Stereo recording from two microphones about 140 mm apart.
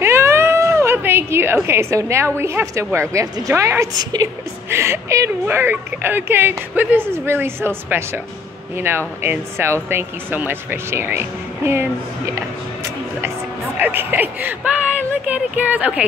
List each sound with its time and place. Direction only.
0.0 s a woman's voice: 20° right (ahead or behind)
13.7 s speech: 15° right (ahead or behind)